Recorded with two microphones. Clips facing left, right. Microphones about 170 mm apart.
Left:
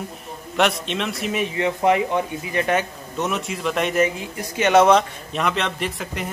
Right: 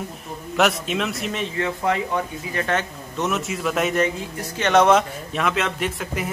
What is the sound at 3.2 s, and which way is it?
Speech, centre (ahead or behind).